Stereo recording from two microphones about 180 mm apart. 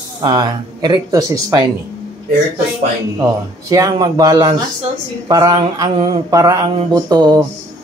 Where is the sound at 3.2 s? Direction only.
20° right (ahead or behind).